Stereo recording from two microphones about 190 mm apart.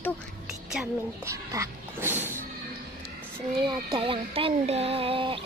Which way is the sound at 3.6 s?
25° right (ahead or behind).